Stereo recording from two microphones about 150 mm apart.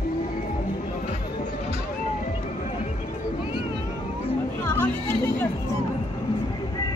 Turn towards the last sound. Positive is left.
turn(degrees=15)  # may be behind; listen again after turning